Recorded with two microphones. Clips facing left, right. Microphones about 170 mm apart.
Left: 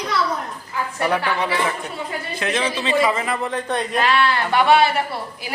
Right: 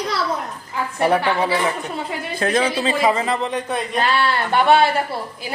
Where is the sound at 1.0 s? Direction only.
25° right (ahead or behind).